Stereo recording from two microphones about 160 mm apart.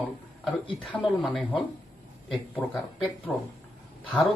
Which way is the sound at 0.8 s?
Centre (ahead or behind).